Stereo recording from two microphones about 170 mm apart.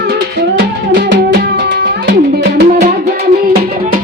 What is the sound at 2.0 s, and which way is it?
Music, 80° right.